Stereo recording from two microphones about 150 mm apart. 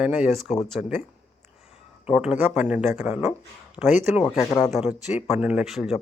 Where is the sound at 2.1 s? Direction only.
5° right (ahead or behind).